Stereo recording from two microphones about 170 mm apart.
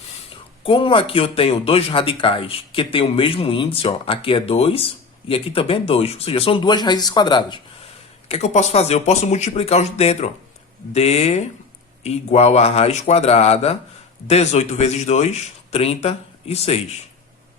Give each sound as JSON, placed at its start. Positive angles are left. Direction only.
{"t": 0.6, "sound": "speech", "side_deg": 30}
{"t": 8.3, "sound": "speech", "side_deg": 40}